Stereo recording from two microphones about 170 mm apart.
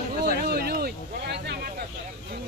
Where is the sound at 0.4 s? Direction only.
65° right (ahead or behind).